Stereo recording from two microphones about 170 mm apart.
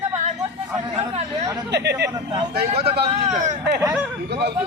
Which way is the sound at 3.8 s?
15° right (ahead or behind).